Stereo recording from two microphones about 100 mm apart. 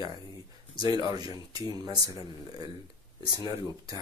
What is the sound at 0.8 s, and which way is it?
Speech, 40° right (ahead or behind).